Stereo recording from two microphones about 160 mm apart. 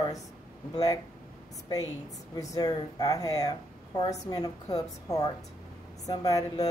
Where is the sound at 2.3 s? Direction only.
20° left (ahead or behind).